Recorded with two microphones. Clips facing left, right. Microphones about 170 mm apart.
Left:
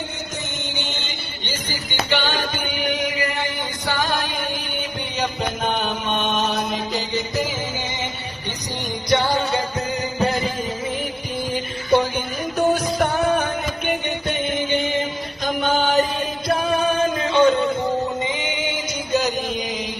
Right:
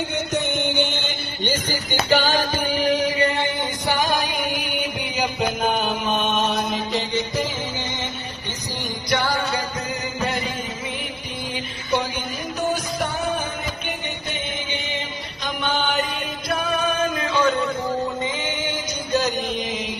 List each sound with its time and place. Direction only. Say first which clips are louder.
0.3 s music: right 10 dB; 60° right (ahead or behind); by 7.4 s centre (ahead or behind)
9.0 s music: left 4 dB; 20° left (ahead or behind)
10.2 s music: left 5 dB; 35° left (ahead or behind)
11.5 s music: left 6 dB; 50° left (ahead or behind)
15.4 s a sound: left 4 dB; 45° left (ahead or behind)
16.5 s music: left 3 dB; 30° left (ahead or behind); by 19.3 s 15° left (ahead or behind)
19.4 s mantra: even; centre (ahead or behind)